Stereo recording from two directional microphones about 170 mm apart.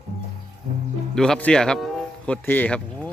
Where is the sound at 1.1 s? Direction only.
5° left (ahead or behind).